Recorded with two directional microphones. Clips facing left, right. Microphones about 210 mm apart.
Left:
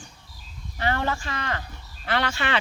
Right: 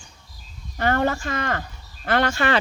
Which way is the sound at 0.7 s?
50° right (ahead or behind).